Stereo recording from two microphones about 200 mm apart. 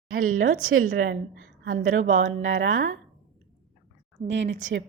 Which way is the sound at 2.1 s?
80° right.